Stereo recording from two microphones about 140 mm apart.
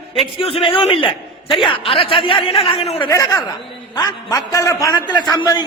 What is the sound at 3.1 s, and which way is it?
A man's voice, 25° left (ahead or behind).